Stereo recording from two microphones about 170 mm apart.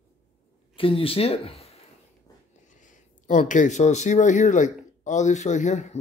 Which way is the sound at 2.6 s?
45° left (ahead or behind).